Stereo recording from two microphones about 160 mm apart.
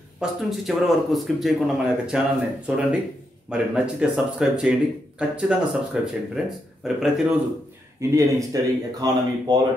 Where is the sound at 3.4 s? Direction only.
5° right (ahead or behind).